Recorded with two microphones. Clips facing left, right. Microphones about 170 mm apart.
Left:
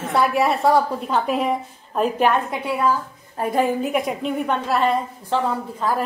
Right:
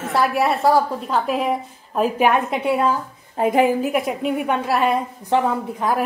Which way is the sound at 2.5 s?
25° right (ahead or behind).